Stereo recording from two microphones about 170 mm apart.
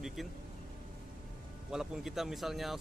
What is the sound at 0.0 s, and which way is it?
Speech, centre (ahead or behind).